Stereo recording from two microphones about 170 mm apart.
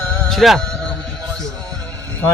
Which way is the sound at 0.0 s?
Centre (ahead or behind).